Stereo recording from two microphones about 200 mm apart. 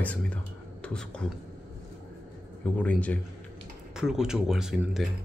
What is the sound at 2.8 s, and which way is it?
Speech, 5° left (ahead or behind).